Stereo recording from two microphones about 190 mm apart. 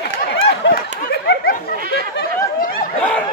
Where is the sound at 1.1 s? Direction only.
55° left (ahead or behind).